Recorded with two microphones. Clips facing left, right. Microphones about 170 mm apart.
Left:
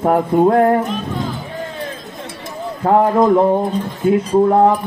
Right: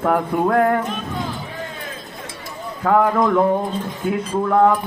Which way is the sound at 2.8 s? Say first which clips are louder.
Left 4 dB; 35° left (ahead or behind).